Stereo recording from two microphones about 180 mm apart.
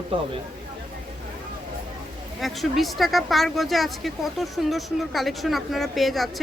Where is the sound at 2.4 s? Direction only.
Centre (ahead or behind).